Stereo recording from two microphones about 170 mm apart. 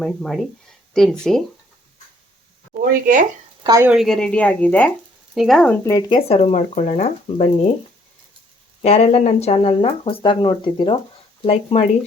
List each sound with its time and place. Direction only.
0.0 s speech: centre (ahead or behind)
2.9 s speech: 50° right (ahead or behind)
3.6 s speech: 20° right (ahead or behind)
3.8 s speech: centre (ahead or behind)
5.8 s speech: 20° left (ahead or behind)
6.1 s speech: 35° left (ahead or behind)
8.8 s speech: 40° left (ahead or behind)
11.4 s speech: 40° left (ahead or behind)